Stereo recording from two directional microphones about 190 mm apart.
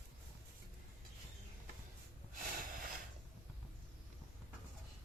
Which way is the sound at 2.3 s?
45° right (ahead or behind).